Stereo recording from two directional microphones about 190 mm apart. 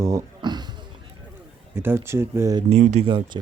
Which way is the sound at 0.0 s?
15° right (ahead or behind).